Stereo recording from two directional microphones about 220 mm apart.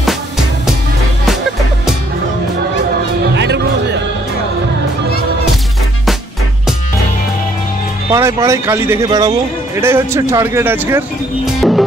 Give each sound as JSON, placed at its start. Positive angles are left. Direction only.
{"t": 3.3, "sound": "music", "side_deg": -50}
{"t": 8.1, "sound": "speech", "side_deg": -15}
{"t": 11.6, "sound": "music", "side_deg": 0}